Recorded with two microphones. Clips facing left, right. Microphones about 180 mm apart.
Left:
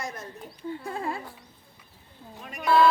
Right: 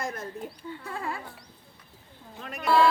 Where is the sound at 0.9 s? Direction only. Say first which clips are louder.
Left 2 dB; 30° left (ahead or behind).